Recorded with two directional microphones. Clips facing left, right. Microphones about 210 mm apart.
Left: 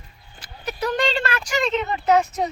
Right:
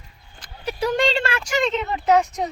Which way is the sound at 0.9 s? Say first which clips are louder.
Right 1 dB; 25° right (ahead or behind).